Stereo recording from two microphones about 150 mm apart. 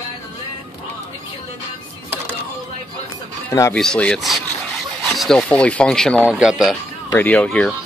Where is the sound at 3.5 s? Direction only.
20° left (ahead or behind).